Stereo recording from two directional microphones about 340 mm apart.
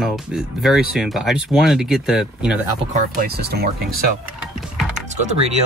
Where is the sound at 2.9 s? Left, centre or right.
Right.